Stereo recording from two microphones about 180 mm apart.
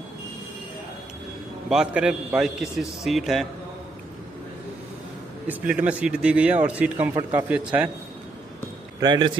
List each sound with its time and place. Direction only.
1.7 s a man's voice: 5° right (ahead or behind)
5.5 s a man's voice: 5° right (ahead or behind)
9.0 s speech: 25° right (ahead or behind)